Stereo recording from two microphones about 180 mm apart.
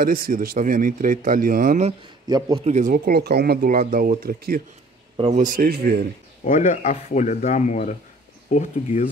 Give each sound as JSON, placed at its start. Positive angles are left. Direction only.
{"t": 0.0, "sound": "speech", "side_deg": -50}
{"t": 2.2, "sound": "a man's voice", "side_deg": -20}
{"t": 2.6, "sound": "speech", "side_deg": -40}
{"t": 5.1, "sound": "speech", "side_deg": -35}
{"t": 6.4, "sound": "speech", "side_deg": 45}